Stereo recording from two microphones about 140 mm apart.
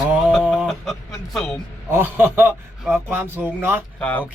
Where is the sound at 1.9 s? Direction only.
15° right (ahead or behind).